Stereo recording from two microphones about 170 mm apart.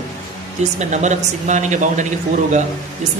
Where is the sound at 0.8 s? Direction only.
45° right (ahead or behind).